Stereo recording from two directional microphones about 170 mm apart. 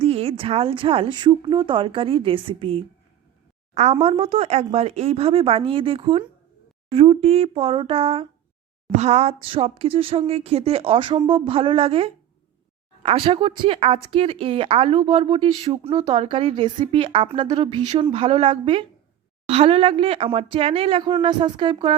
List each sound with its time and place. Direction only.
0.0 s speech: 35° right (ahead or behind)
4.0 s speech: 35° right (ahead or behind)